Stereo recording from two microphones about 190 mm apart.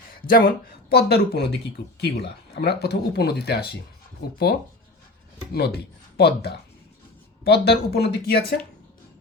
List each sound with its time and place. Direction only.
0.3 s speech: 50° left (ahead or behind)
5.5 s speech: 55° left (ahead or behind)